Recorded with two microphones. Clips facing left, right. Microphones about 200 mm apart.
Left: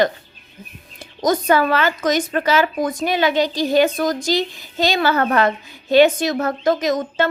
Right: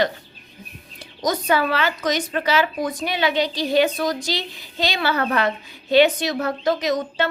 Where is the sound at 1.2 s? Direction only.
50° left (ahead or behind).